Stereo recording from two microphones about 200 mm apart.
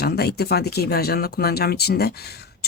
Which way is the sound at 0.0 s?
50° left (ahead or behind).